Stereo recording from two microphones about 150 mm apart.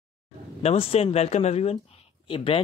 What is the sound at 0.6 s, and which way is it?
Speech, 45° left (ahead or behind).